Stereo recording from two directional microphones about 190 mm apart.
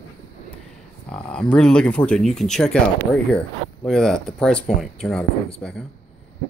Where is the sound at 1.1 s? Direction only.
5° left (ahead or behind).